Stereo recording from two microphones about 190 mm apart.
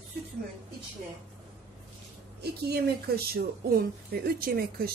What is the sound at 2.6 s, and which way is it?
A woman's voice, 55° right (ahead or behind).